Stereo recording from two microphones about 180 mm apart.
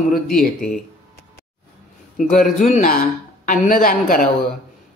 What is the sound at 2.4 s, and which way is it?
Speech, 40° left (ahead or behind).